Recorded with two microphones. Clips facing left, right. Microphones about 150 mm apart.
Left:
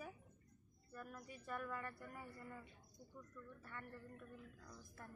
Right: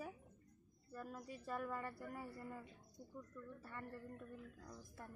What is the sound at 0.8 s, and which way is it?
Speech, 30° right (ahead or behind).